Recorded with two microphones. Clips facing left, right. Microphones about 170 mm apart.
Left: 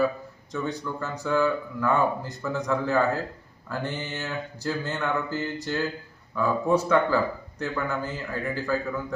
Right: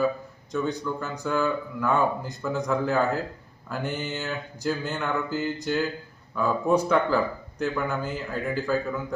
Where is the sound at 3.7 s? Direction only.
15° right (ahead or behind).